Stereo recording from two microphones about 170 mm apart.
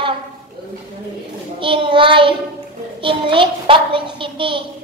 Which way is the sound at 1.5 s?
30° right (ahead or behind).